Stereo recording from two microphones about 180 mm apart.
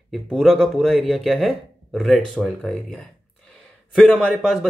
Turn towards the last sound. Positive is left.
turn(degrees=0)  # may be behind; listen again after turning